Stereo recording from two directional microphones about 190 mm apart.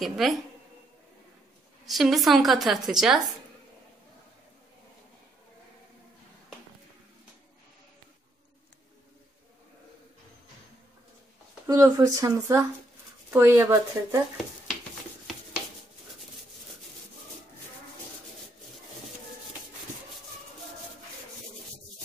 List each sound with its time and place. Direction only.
0.0 s a woman's voice: centre (ahead or behind)
1.9 s a woman's voice: centre (ahead or behind)
11.6 s speech: 15° right (ahead or behind)